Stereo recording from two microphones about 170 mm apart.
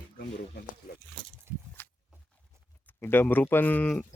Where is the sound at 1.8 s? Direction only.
10° left (ahead or behind).